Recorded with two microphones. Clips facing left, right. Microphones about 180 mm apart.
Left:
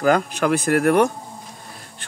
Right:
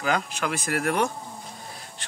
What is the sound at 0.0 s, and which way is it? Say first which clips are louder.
Speech: left 8 dB; 45° left (ahead or behind).